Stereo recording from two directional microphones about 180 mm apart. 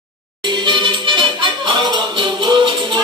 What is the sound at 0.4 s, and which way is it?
Music, 25° right (ahead or behind).